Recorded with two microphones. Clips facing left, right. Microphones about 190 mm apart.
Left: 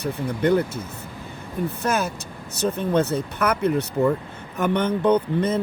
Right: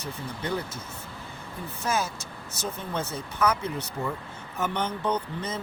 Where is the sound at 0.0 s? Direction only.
60° left (ahead or behind).